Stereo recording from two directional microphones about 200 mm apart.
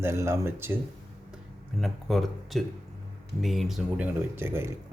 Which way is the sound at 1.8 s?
Centre (ahead or behind).